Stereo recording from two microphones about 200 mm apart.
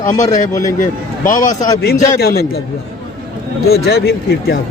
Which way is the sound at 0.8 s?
40° left (ahead or behind).